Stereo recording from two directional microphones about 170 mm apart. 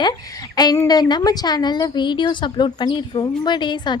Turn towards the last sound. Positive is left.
turn(degrees=25)  # may be behind; listen again after turning